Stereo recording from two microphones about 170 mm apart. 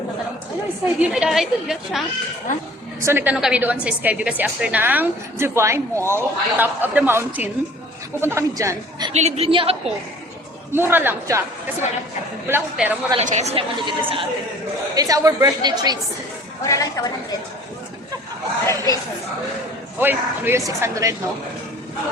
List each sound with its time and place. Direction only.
0.9 s a woman's voice: 5° right (ahead or behind)
3.0 s a woman's voice: 15° right (ahead or behind)
9.1 s a woman's voice: 40° right (ahead or behind)
10.7 s a woman's voice: 15° right (ahead or behind)
13.1 s a woman's voice: 40° right (ahead or behind); by 16.0 s 25° right (ahead or behind)
16.6 s a woman's voice: 20° left (ahead or behind)
18.6 s speech: 20° left (ahead or behind)
20.0 s a woman's voice: 10° right (ahead or behind)